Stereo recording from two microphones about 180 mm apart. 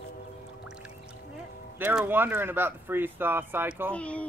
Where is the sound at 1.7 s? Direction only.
10° right (ahead or behind).